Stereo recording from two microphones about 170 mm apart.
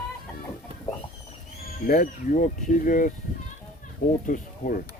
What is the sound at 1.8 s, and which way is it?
Speech, 50° left (ahead or behind).